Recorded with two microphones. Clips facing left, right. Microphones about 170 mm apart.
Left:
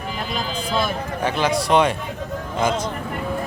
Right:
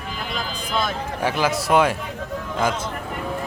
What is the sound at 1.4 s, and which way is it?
Speech, 5° right (ahead or behind).